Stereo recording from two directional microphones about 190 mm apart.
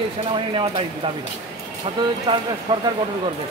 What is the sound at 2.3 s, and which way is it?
Speech, 25° right (ahead or behind).